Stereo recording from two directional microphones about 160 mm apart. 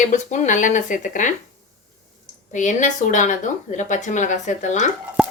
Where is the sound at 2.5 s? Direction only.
50° left (ahead or behind).